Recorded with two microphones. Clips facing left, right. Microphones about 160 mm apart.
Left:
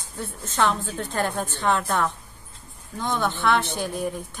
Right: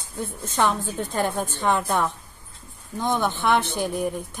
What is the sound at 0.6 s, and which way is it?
A woman's voice, 15° right (ahead or behind).